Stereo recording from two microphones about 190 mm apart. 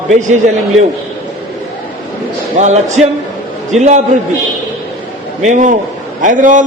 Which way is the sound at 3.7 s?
Centre (ahead or behind).